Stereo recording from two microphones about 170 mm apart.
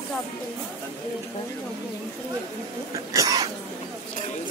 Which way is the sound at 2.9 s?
20° right (ahead or behind).